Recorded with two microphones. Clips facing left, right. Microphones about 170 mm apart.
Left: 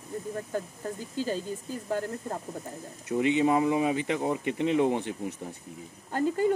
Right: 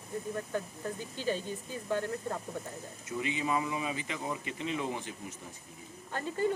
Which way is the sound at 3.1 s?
65° left (ahead or behind).